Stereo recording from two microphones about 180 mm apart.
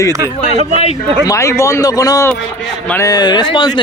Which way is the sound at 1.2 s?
20° left (ahead or behind).